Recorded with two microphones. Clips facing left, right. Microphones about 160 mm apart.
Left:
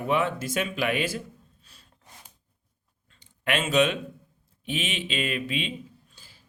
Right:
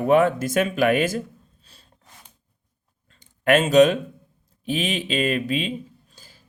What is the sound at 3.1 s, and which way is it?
Speech, 45° right (ahead or behind).